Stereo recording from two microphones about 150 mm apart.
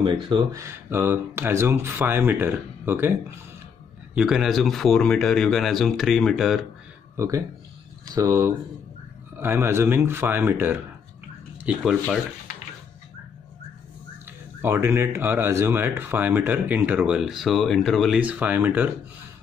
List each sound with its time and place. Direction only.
0.0 s speech: 35° right (ahead or behind)
0.5 s speech: 20° right (ahead or behind)
4.1 s speech: 5° right (ahead or behind)
7.2 s speech: 20° right (ahead or behind); by 12.2 s 5° right (ahead or behind)
14.6 s speech: 15° right (ahead or behind); by 18.2 s centre (ahead or behind)
18.2 s speech: 10° right (ahead or behind)